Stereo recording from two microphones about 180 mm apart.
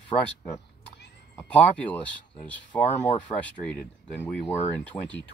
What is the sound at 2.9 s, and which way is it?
Speech, 40° left (ahead or behind).